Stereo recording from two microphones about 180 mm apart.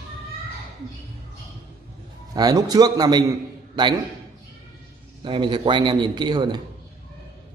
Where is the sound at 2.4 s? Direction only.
20° right (ahead or behind).